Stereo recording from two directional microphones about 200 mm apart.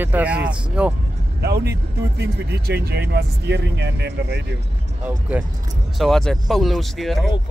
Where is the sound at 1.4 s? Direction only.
55° right (ahead or behind).